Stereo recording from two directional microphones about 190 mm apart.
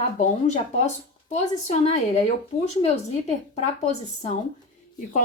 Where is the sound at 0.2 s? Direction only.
40° left (ahead or behind).